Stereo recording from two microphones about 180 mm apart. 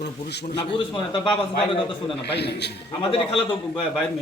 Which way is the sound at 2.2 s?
65° left (ahead or behind).